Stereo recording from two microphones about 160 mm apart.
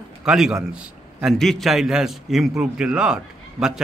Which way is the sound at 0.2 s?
5° right (ahead or behind).